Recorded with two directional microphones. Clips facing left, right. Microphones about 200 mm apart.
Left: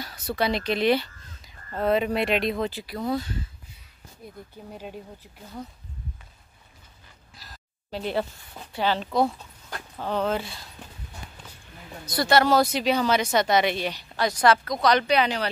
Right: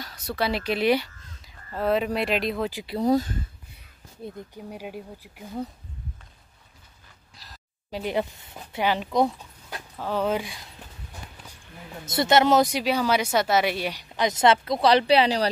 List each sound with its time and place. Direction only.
0.0 s speech: centre (ahead or behind)
2.9 s speech: 40° right (ahead or behind)
4.6 s speech: 10° right (ahead or behind)
7.3 s a sound: centre (ahead or behind)
7.9 s speech: 15° right (ahead or behind)
9.7 s speech: 5° right (ahead or behind)
12.0 s speech: 20° right (ahead or behind)